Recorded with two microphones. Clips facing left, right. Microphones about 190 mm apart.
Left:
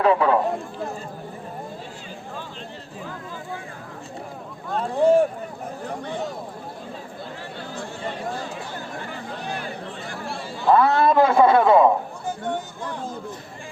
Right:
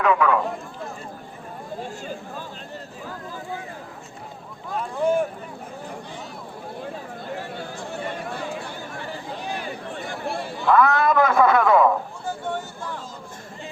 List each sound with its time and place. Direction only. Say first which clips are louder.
0.0 s speech: left 2 dB; 30° left (ahead or behind)
4.8 s speech: left 5 dB; 30° left (ahead or behind)
10.7 s a man's voice: left 1 dB; 30° left (ahead or behind)